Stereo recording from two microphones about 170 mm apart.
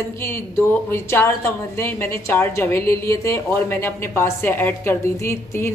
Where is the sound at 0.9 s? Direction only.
15° left (ahead or behind).